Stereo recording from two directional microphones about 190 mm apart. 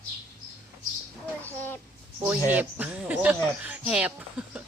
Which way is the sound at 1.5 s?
10° left (ahead or behind).